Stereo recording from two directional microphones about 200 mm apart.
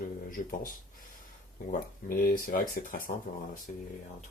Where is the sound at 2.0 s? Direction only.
45° left (ahead or behind).